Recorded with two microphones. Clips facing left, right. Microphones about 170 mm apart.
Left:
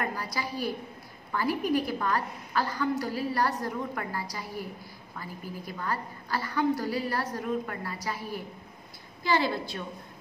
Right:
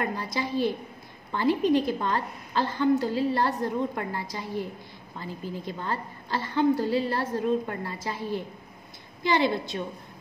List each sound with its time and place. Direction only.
0.0 s a woman's voice: 25° right (ahead or behind)